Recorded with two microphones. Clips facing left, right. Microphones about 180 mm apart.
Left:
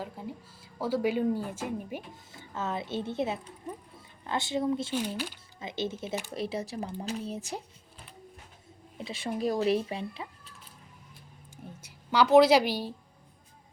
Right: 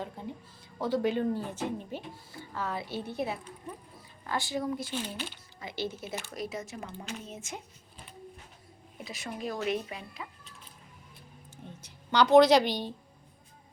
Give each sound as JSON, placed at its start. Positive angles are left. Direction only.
{"t": 0.0, "sound": "speech", "side_deg": 5}
{"t": 4.9, "sound": "speech", "side_deg": 10}
{"t": 5.5, "sound": "a woman's voice", "side_deg": 20}
{"t": 9.0, "sound": "speech", "side_deg": 30}
{"t": 11.5, "sound": "speech", "side_deg": 10}